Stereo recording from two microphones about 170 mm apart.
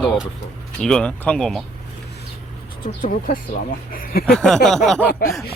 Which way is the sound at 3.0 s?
55° left (ahead or behind).